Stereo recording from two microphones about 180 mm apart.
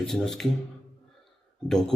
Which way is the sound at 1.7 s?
5° left (ahead or behind).